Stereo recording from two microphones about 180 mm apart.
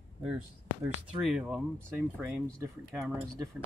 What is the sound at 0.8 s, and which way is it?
Speech, 5° right (ahead or behind).